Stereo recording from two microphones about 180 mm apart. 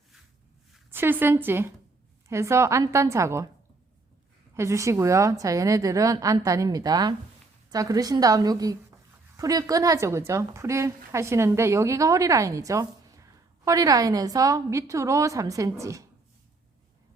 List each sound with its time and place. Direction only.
0.9 s a woman's voice: 10° right (ahead or behind)
4.5 s a woman's voice: 15° right (ahead or behind)